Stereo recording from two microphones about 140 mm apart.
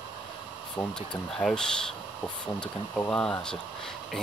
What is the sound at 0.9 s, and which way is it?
Speech, 5° left (ahead or behind).